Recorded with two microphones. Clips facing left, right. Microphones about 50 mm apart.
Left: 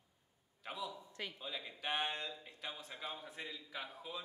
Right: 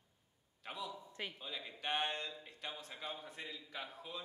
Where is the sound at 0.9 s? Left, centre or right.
Centre.